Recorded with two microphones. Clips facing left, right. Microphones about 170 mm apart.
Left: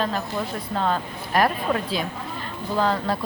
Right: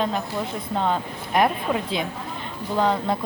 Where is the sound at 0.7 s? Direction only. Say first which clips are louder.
Right 1 dB; 15° right (ahead or behind).